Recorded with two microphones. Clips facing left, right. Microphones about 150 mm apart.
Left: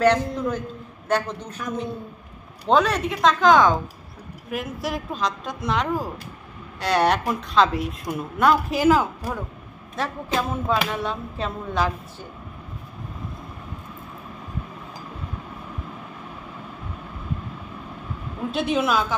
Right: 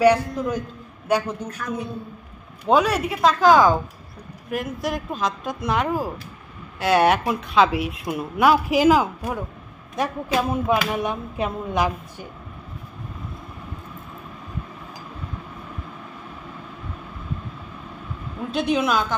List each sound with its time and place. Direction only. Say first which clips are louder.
0.0 s a man's voice: right 2 dB; 10° right (ahead or behind)
2.7 s speech: right 1 dB; 10° right (ahead or behind)
18.5 s speech: right 1 dB; centre (ahead or behind)